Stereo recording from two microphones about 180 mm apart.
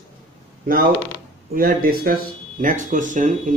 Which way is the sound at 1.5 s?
55° right (ahead or behind).